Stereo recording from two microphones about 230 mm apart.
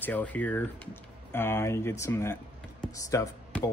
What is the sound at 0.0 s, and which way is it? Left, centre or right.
Speech, centre.